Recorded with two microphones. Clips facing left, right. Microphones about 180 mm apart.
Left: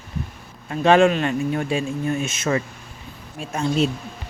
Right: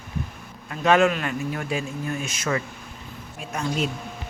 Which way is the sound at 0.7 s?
30° left (ahead or behind).